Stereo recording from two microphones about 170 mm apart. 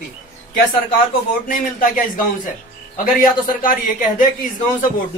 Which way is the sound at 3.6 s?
50° left (ahead or behind).